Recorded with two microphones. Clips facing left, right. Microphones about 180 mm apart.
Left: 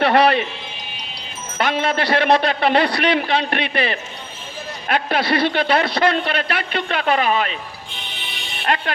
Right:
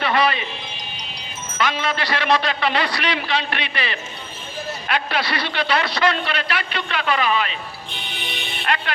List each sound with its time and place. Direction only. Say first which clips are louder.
0.0 s music: left 5 dB; 65° left (ahead or behind)
1.5 s a man's voice: left 3 dB; 55° left (ahead or behind)